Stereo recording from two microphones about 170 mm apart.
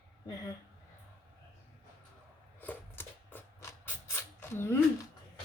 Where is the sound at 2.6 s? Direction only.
10° left (ahead or behind).